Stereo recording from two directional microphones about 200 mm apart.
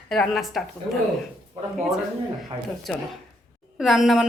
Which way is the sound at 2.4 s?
Centre (ahead or behind).